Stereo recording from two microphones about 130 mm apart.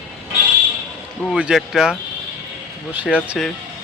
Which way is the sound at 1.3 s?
5° right (ahead or behind).